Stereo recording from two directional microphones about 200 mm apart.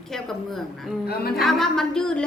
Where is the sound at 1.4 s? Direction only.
Centre (ahead or behind).